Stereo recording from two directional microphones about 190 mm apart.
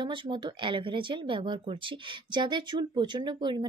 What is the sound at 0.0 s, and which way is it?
A woman's voice, 25° right (ahead or behind).